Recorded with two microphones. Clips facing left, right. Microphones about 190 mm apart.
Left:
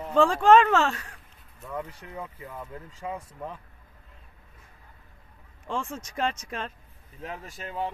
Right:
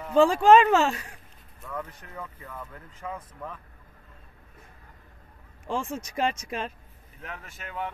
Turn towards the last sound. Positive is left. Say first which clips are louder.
# left 3 dB
turn(degrees=30)  # may be behind; listen again after turning